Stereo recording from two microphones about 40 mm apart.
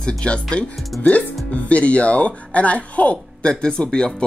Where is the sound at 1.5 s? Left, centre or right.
Left.